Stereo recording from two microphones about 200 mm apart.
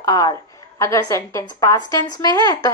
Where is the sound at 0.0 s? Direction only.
20° left (ahead or behind).